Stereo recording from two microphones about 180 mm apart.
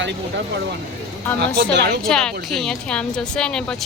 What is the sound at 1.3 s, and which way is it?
Speech, 65° right (ahead or behind).